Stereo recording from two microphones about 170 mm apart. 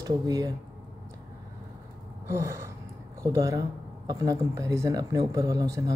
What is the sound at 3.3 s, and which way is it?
Speech, 20° right (ahead or behind).